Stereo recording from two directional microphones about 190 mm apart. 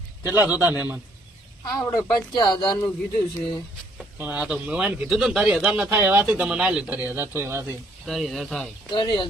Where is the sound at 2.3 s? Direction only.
20° left (ahead or behind).